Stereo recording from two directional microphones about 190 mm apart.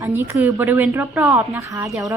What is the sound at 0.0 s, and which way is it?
A woman's voice, 10° right (ahead or behind).